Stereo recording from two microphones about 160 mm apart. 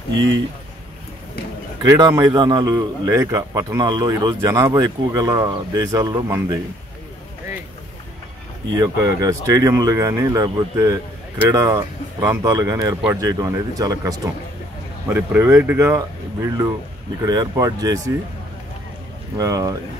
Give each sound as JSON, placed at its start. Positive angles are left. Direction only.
{"t": 1.8, "sound": "a man's voice", "side_deg": -25}
{"t": 8.7, "sound": "a man's voice", "side_deg": -20}
{"t": 19.3, "sound": "a man's voice", "side_deg": -20}